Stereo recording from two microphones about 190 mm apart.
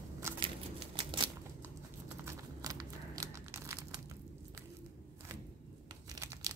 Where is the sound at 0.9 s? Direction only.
25° right (ahead or behind).